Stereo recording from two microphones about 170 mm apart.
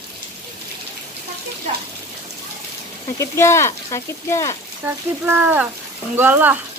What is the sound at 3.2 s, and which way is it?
Speech, 15° left (ahead or behind).